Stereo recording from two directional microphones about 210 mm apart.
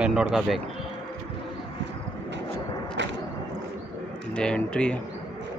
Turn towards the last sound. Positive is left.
turn(degrees=5)  # may be behind; listen again after turning